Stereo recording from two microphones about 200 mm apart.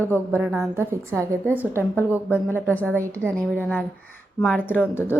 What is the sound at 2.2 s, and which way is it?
Speech, 10° left (ahead or behind).